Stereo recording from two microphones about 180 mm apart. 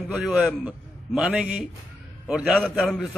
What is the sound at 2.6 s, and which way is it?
Speech, 5° left (ahead or behind).